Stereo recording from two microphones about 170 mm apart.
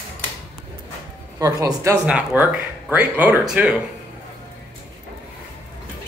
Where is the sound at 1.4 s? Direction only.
20° right (ahead or behind).